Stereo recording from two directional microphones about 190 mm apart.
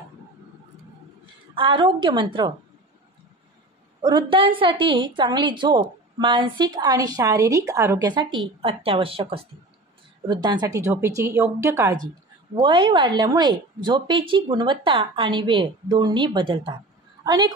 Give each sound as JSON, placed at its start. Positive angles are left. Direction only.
{"t": 1.2, "sound": "a woman's voice", "side_deg": -25}
{"t": 4.0, "sound": "a woman's voice", "side_deg": -25}
{"t": 12.5, "sound": "a woman's voice", "side_deg": -25}
{"t": 17.2, "sound": "a sound", "side_deg": -20}